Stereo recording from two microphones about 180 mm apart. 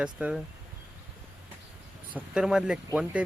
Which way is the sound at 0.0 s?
5° right (ahead or behind).